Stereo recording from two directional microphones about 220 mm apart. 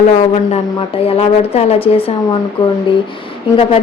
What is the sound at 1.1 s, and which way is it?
A woman's voice, 25° left (ahead or behind).